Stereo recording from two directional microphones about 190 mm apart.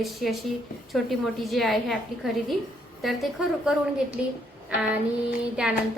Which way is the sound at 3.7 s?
5° right (ahead or behind).